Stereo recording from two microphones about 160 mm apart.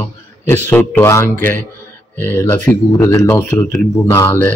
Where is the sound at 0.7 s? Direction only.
15° left (ahead or behind).